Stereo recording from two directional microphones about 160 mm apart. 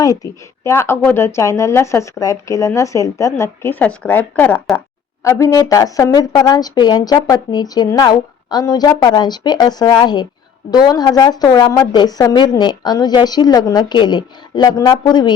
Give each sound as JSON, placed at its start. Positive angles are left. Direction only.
{"t": 0.0, "sound": "speech", "side_deg": 20}